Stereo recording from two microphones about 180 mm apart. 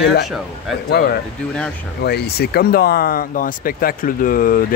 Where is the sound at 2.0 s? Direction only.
65° left (ahead or behind).